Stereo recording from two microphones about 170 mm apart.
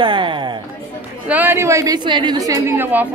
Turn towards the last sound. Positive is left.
turn(degrees=-10)  # may be behind; listen again after turning